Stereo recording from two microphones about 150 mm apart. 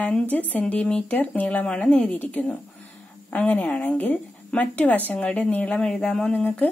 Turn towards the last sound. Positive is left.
turn(degrees=5)  # may be behind; listen again after turning